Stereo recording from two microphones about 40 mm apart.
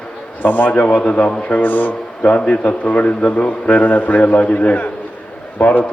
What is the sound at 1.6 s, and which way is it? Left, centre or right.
A man's voice, left.